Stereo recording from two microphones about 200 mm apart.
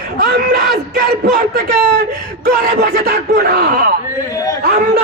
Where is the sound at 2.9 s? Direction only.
50° right (ahead or behind).